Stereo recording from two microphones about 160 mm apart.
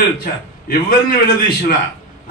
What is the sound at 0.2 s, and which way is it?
Speech, 65° left (ahead or behind).